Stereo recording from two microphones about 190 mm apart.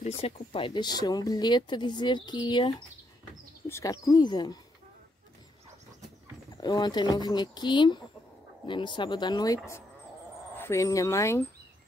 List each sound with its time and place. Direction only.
0.0 s speech: 30° left (ahead or behind)
6.5 s speech: 20° left (ahead or behind)